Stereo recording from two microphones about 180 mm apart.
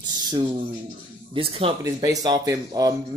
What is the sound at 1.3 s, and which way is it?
Speech, 30° right (ahead or behind).